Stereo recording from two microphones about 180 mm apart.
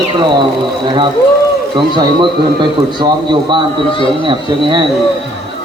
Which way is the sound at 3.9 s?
30° left (ahead or behind).